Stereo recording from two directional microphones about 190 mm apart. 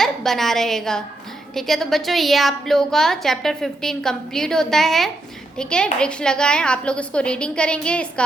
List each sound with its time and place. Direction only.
0.0 s a woman's voice: centre (ahead or behind)